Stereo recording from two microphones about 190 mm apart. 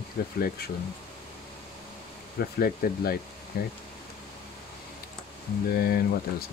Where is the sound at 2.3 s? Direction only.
50° left (ahead or behind).